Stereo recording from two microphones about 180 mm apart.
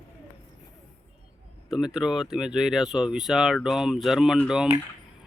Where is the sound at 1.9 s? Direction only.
Centre (ahead or behind).